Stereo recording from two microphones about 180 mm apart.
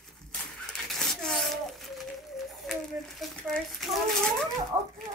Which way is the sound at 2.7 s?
Centre (ahead or behind).